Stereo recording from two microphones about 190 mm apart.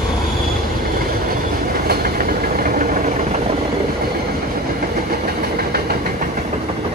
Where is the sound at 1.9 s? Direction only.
55° right (ahead or behind).